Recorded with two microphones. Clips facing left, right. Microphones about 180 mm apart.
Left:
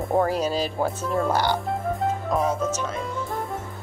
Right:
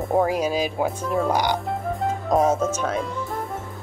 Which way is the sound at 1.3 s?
15° right (ahead or behind).